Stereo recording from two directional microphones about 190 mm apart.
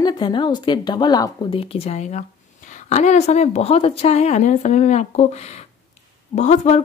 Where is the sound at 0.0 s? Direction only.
25° left (ahead or behind).